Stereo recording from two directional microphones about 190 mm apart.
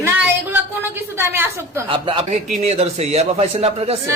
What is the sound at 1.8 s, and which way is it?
Speech, 25° right (ahead or behind).